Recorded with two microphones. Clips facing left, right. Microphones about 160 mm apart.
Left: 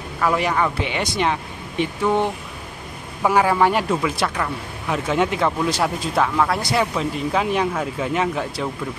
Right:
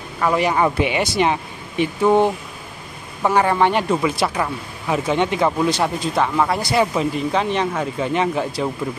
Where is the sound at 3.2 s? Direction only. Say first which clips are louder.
Even; 5° left (ahead or behind).